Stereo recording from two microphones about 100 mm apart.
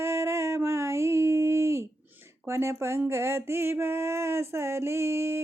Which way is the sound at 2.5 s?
25° right (ahead or behind).